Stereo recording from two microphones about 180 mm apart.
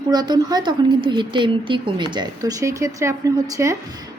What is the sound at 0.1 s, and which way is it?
A woman's voice, 20° right (ahead or behind).